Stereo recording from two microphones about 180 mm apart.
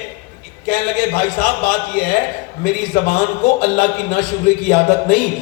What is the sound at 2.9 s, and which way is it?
Speech, 50° left (ahead or behind).